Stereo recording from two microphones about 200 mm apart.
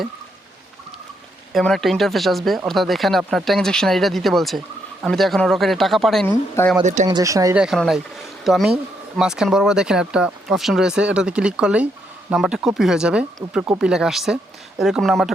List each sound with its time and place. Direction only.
1.5 s speech: centre (ahead or behind)
6.3 s speech: 10° left (ahead or behind)
6.8 s speech: 35° right (ahead or behind)
7.1 s speech: 15° right (ahead or behind)
7.5 s speech: centre (ahead or behind)